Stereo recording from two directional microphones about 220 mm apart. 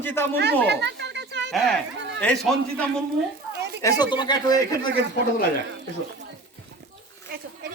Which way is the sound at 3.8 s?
15° left (ahead or behind).